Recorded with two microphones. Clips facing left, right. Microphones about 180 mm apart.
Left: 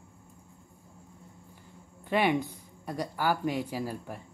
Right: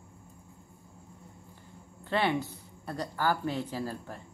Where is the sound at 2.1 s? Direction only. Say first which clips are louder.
Left 2 dB; 15° left (ahead or behind).